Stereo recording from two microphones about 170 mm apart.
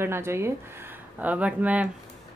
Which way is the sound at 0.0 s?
15° right (ahead or behind).